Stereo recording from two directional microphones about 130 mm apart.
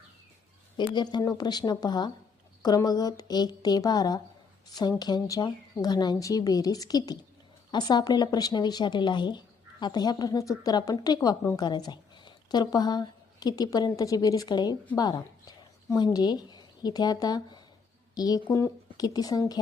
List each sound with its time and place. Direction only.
0.8 s a woman's voice: 35° left (ahead or behind)